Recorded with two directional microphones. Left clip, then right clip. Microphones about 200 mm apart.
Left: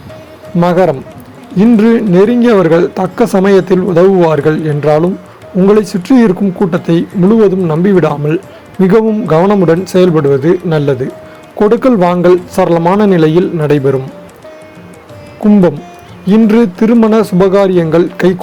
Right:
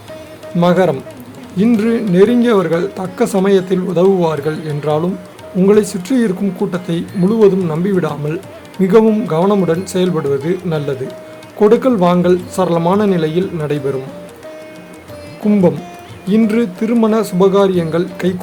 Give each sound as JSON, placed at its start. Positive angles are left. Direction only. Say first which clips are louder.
{"t": 0.6, "sound": "a man's voice", "louder": "left 3 dB", "side_deg": 25}
{"t": 16.2, "sound": "a man's voice", "louder": "left 6 dB", "side_deg": 25}